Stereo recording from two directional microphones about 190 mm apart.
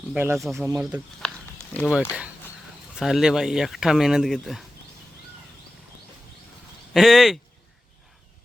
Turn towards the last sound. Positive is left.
turn(degrees=0)  # may be behind; listen again after turning